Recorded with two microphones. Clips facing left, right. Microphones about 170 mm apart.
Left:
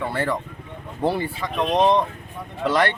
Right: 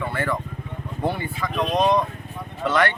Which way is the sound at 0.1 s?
35° left (ahead or behind).